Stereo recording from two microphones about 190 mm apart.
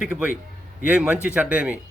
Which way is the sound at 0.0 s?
5° right (ahead or behind).